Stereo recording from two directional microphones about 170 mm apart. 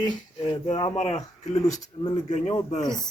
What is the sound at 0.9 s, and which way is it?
Speech, 40° left (ahead or behind).